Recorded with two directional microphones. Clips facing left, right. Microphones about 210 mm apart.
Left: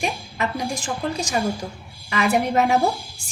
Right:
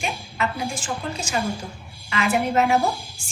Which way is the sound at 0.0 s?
40° left (ahead or behind).